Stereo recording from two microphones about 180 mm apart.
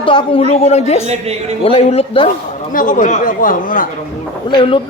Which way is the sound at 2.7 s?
45° left (ahead or behind).